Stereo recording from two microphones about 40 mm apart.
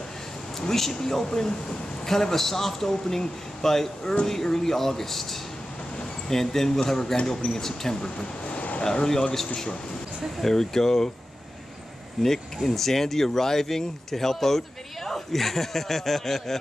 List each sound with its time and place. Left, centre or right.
0.6 s a man's voice: centre
8.5 s a sound: left
10.4 s a man's voice: centre
12.2 s a man's voice: centre